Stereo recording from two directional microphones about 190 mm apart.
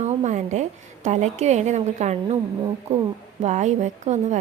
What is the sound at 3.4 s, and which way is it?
Speech, 40° right (ahead or behind).